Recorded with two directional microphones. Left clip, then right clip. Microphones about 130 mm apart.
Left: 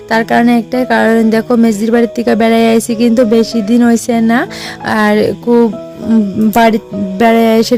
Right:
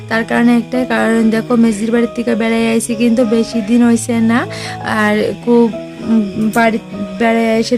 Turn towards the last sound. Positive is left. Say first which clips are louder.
# left 4 dB
turn(degrees=65)  # may be behind; listen again after turning